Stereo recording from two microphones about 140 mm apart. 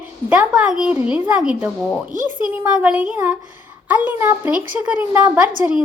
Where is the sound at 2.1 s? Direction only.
65° right (ahead or behind).